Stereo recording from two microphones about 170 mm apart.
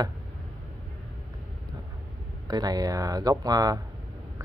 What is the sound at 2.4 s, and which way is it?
Speech, 25° right (ahead or behind).